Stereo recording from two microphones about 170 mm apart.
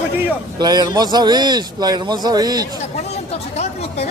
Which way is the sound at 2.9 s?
40° left (ahead or behind).